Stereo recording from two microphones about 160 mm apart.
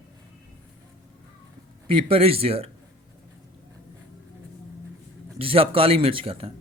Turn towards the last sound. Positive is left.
turn(degrees=-35)  # may be behind; listen again after turning